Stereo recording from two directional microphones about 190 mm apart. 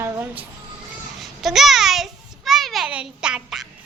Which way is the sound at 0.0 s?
10° right (ahead or behind).